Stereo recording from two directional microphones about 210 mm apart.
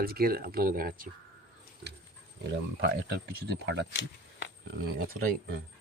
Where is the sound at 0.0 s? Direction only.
45° right (ahead or behind).